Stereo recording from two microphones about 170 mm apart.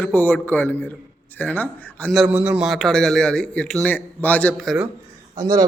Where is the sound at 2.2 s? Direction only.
10° right (ahead or behind).